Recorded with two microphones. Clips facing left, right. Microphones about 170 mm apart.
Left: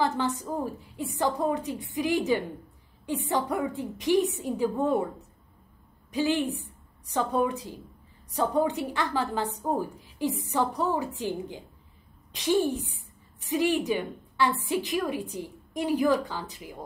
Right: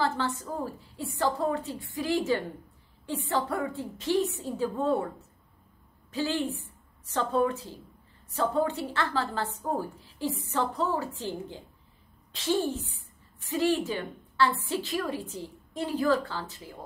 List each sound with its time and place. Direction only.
0.0 s a woman's voice: 20° left (ahead or behind)
6.1 s a woman's voice: 15° left (ahead or behind)